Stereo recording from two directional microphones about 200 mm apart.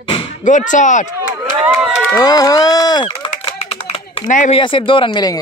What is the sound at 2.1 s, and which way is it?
Speech, 20° left (ahead or behind).